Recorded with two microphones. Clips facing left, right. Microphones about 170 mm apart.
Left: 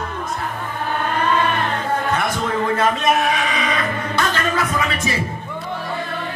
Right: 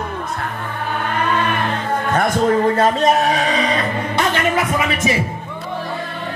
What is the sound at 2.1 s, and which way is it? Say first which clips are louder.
Music: right 5 dB; 45° right (ahead or behind).